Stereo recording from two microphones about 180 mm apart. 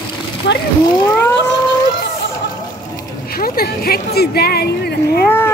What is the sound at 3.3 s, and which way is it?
Speech, 55° left (ahead or behind).